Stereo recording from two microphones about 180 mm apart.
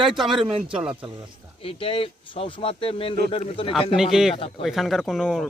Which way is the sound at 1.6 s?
30° left (ahead or behind).